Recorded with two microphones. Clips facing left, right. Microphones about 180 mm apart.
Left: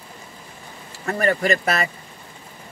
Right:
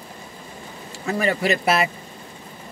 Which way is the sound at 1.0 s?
5° right (ahead or behind).